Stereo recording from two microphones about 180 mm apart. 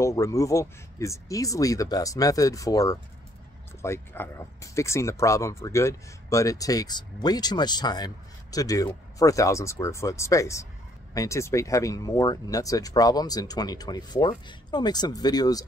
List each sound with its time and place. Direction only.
0.0 s speech: 15° left (ahead or behind)